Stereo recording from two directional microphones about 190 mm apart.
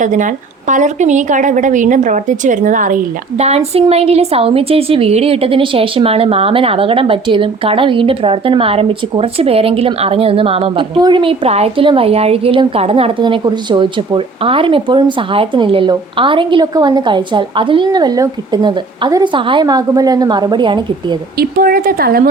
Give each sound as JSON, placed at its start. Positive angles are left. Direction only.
{"t": 0.0, "sound": "a woman's voice", "side_deg": -40}
{"t": 21.3, "sound": "speech", "side_deg": -50}